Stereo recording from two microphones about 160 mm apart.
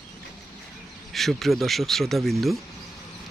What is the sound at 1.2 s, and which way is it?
Speech, centre (ahead or behind).